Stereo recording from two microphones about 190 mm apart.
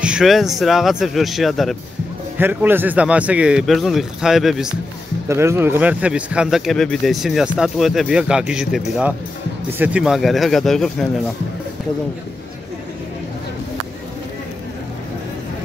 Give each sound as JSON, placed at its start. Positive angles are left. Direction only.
{"t": 0.0, "sound": "speech", "side_deg": -5}
{"t": 2.3, "sound": "speech", "side_deg": -10}
{"t": 5.3, "sound": "speech", "side_deg": -15}